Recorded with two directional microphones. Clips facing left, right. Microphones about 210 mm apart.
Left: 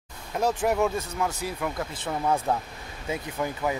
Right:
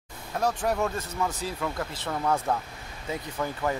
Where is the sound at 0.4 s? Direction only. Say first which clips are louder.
Left 3 dB; 10° left (ahead or behind).